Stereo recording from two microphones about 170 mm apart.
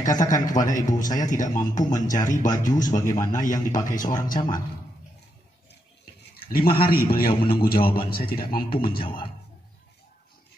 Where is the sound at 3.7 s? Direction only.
50° left (ahead or behind).